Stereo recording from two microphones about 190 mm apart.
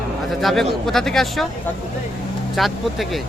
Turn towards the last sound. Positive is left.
turn(degrees=0)  # may be behind; listen again after turning